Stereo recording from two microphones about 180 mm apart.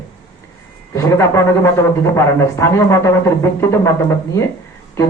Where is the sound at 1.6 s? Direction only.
15° left (ahead or behind).